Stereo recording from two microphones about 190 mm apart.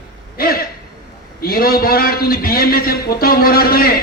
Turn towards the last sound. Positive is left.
turn(degrees=50)  # may be behind; listen again after turning